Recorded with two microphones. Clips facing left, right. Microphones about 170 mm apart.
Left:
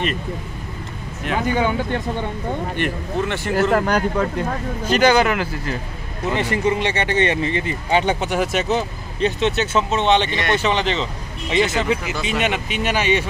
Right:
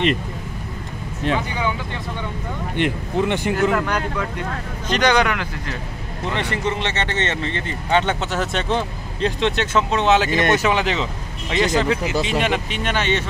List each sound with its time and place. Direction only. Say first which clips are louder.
1.3 s speech: left 5 dB; 45° left (ahead or behind)
2.8 s speech: right 5 dB; 15° right (ahead or behind)
3.7 s speech: left 4 dB; 40° left (ahead or behind)
4.8 s speech: left 2 dB; 5° left (ahead or behind)
11.5 s speech: even; 5° left (ahead or behind)